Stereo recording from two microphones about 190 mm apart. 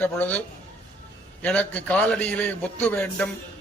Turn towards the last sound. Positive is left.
turn(degrees=10)  # may be behind; listen again after turning